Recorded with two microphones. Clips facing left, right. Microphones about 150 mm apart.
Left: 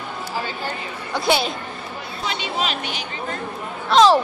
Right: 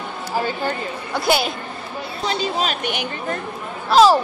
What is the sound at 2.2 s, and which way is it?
Speech, 40° right (ahead or behind).